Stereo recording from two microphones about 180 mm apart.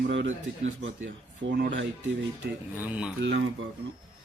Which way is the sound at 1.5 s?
80° right.